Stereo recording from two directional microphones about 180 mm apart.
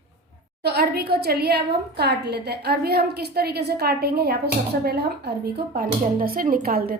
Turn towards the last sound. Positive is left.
turn(degrees=-55)  # may be behind; listen again after turning